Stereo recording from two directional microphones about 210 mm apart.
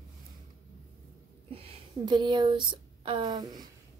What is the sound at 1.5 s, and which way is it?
Speech, 25° right (ahead or behind).